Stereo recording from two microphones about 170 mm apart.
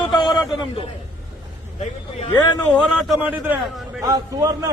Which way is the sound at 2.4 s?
10° left (ahead or behind).